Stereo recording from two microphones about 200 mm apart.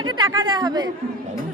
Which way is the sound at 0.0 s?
20° right (ahead or behind).